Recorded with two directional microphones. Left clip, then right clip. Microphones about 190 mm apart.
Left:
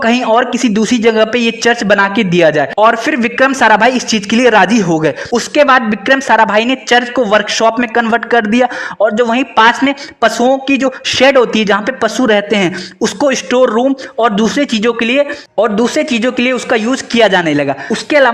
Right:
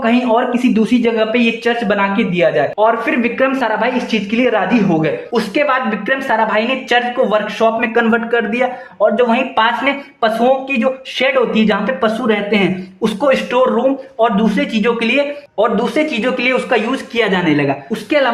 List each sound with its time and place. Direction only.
0.0 s speech: 50° left (ahead or behind)